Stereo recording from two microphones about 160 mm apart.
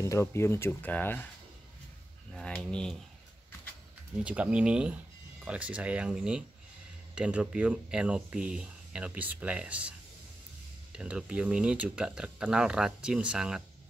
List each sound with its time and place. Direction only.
0.0 s speech: 15° left (ahead or behind)
2.3 s speech: 5° left (ahead or behind)
4.2 s speech: 10° right (ahead or behind)